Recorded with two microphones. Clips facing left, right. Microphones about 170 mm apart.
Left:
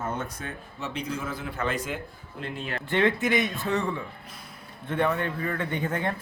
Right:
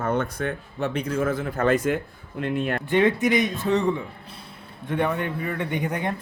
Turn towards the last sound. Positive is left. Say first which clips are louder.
# right 2 dB
turn(degrees=-15)  # may be behind; listen again after turning